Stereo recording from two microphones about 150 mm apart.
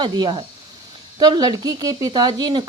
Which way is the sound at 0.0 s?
30° right (ahead or behind).